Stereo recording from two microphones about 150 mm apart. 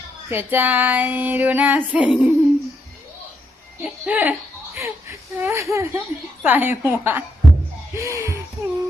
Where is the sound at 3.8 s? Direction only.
10° right (ahead or behind).